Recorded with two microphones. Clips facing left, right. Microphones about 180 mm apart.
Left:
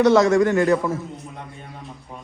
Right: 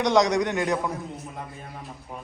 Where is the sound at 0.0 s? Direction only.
15° right (ahead or behind).